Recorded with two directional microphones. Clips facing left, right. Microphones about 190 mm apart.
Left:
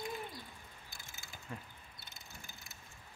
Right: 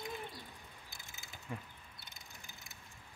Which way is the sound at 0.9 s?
20° right (ahead or behind).